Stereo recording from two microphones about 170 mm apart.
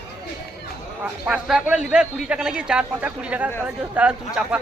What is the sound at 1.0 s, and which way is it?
Speech, 5° right (ahead or behind).